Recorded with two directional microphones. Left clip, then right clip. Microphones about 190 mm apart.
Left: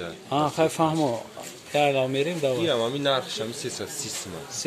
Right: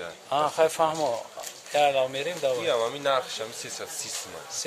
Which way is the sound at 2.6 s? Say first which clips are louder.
Left 1 dB; 30° right (ahead or behind).